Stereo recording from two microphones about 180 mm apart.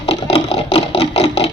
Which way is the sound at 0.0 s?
35° left (ahead or behind).